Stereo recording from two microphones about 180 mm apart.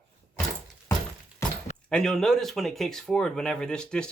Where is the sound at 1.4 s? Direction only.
15° left (ahead or behind).